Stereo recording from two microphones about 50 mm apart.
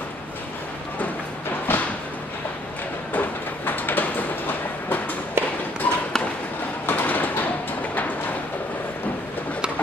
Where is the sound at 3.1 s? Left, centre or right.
Left.